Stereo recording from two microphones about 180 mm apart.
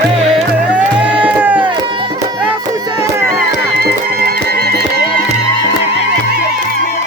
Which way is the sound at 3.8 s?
60° right (ahead or behind).